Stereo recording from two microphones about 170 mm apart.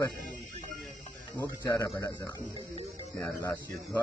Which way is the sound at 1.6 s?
20° left (ahead or behind).